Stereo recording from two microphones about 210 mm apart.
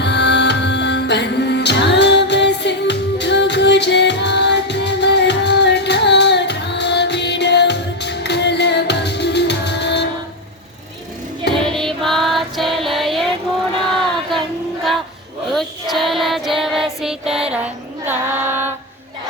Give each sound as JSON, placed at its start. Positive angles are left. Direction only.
{"t": 0.0, "sound": "music", "side_deg": 55}
{"t": 11.5, "sound": "music", "side_deg": 0}
{"t": 15.5, "sound": "music", "side_deg": 0}